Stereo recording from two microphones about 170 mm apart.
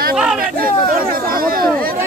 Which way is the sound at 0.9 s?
55° right (ahead or behind).